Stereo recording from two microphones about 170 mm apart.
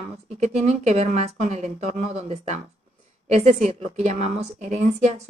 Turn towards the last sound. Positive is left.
turn(degrees=-40)  # may be behind; listen again after turning